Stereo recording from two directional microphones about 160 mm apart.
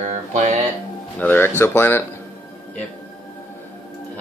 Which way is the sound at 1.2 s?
10° left (ahead or behind).